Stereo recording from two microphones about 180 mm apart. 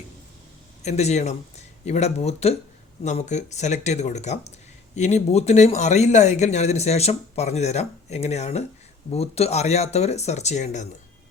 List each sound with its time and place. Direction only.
0.9 s speech: 40° left (ahead or behind)